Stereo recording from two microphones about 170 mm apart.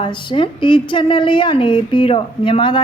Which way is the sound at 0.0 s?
30° left (ahead or behind).